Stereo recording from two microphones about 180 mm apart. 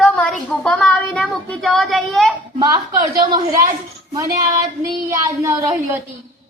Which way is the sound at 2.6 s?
20° right (ahead or behind).